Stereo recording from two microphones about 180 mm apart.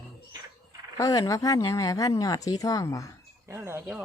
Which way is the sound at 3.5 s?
15° right (ahead or behind).